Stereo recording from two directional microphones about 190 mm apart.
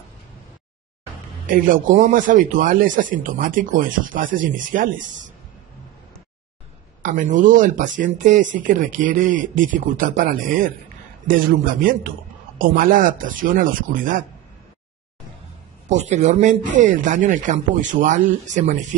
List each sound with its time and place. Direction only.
1.5 s speech: 45° right (ahead or behind)
7.0 s speech: 45° right (ahead or behind)
15.9 s speech: 40° right (ahead or behind)